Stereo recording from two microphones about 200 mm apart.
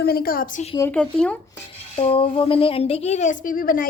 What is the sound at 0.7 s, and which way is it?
Speech, 10° left (ahead or behind).